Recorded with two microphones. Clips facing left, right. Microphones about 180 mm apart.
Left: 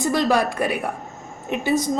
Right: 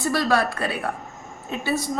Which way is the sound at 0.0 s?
15° left (ahead or behind).